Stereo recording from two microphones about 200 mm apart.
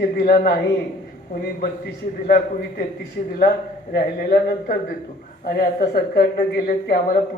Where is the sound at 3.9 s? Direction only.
45° left (ahead or behind).